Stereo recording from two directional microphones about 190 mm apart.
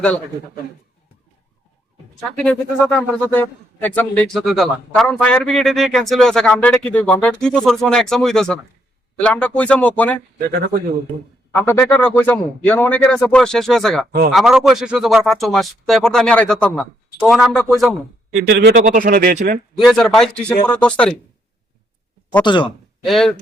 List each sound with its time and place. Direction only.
2.3 s a man's voice: 5° left (ahead or behind)
11.5 s speech: 5° left (ahead or behind)
18.3 s speech: 55° right (ahead or behind)
19.8 s speech: centre (ahead or behind)
22.4 s speech: 25° left (ahead or behind)
23.0 s speech: centre (ahead or behind)